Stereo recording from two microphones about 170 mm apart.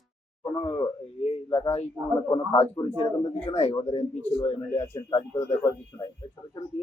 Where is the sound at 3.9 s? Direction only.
40° left (ahead or behind).